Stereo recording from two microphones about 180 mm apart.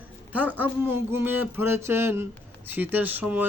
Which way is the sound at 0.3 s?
10° right (ahead or behind).